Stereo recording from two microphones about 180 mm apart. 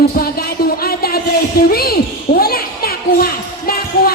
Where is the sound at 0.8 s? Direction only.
55° left (ahead or behind).